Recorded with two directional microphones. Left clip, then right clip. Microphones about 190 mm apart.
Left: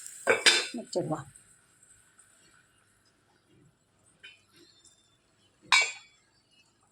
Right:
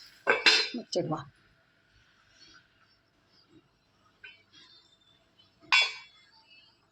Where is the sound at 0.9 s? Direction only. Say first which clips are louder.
Right 1 dB; 10° left (ahead or behind).